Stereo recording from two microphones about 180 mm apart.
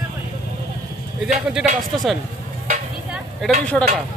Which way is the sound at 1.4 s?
Centre (ahead or behind).